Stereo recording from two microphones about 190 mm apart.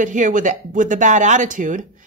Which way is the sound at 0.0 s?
40° right (ahead or behind).